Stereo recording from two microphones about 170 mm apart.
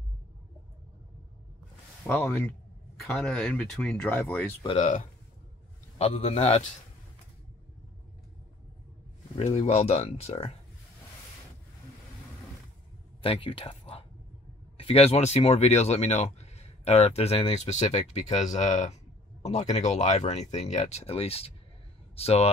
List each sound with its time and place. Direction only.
2.0 s speech: 10° left (ahead or behind)
4.6 s speech: 35° left (ahead or behind)
9.4 s speech: 40° left (ahead or behind)
13.2 s speech: 30° left (ahead or behind)